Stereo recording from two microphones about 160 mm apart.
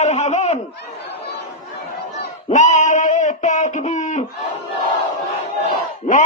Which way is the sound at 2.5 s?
50° left (ahead or behind).